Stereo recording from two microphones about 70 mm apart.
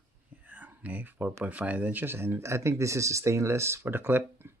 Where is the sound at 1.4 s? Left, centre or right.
Right.